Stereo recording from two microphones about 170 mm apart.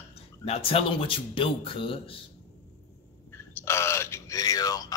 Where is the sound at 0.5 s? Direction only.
35° left (ahead or behind).